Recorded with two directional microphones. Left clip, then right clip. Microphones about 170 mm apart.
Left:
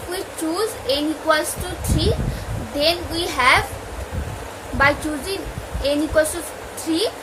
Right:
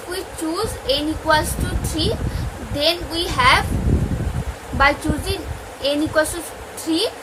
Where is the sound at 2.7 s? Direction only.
15° right (ahead or behind).